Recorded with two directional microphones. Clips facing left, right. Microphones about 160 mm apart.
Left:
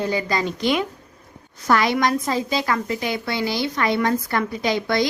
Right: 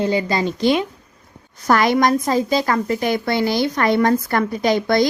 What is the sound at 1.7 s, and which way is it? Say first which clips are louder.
A woman's voice: right 4 dB; 45° right (ahead or behind).